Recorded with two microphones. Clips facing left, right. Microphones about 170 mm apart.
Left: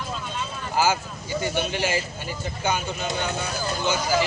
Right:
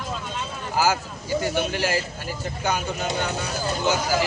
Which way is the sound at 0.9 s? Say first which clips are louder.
Right 1 dB; 5° right (ahead or behind).